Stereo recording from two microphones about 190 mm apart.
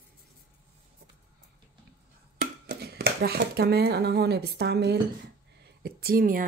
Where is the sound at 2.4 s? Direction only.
55° right (ahead or behind).